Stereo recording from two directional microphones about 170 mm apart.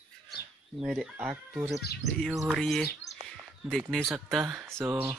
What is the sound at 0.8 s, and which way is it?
Speech, centre (ahead or behind).